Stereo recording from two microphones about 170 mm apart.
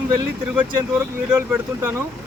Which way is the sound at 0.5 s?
10° right (ahead or behind).